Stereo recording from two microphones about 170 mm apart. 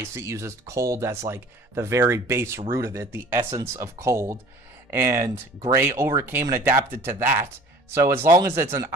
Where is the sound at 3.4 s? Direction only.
30° right (ahead or behind).